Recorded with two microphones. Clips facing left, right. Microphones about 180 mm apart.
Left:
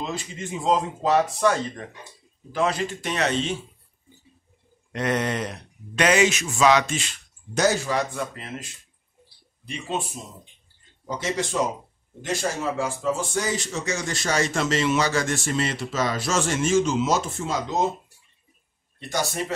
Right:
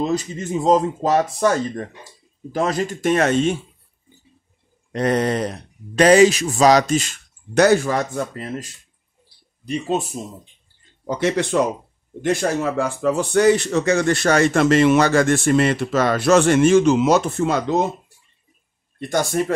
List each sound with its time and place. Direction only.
0.0 s speech: 40° right (ahead or behind)
4.9 s speech: 35° right (ahead or behind)
7.5 s speech: 60° right (ahead or behind); by 8.6 s 40° right (ahead or behind)
9.7 s speech: 40° right (ahead or behind)
11.1 s speech: 65° right (ahead or behind)
18.9 s speech: 50° right (ahead or behind)